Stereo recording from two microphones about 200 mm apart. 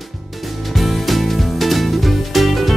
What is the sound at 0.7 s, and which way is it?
Music, centre (ahead or behind).